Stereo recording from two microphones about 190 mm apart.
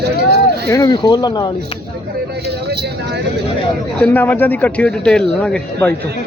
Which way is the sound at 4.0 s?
10° left (ahead or behind).